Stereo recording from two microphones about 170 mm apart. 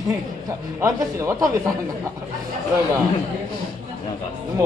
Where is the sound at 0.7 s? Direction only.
15° right (ahead or behind).